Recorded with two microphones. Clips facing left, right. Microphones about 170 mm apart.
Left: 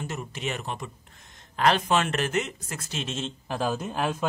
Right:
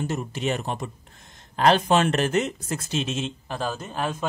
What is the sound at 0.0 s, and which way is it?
Speech, 35° right (ahead or behind).